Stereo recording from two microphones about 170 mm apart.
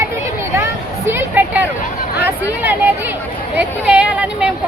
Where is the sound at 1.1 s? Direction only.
10° right (ahead or behind).